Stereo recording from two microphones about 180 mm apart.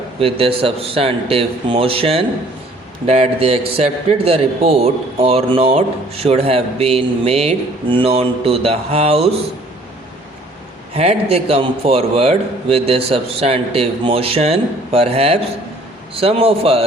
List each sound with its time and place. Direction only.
0.2 s speech: 30° right (ahead or behind)
10.9 s speech: 35° right (ahead or behind)